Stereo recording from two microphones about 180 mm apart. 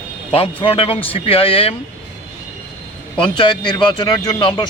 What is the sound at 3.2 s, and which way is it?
Speech, 25° left (ahead or behind).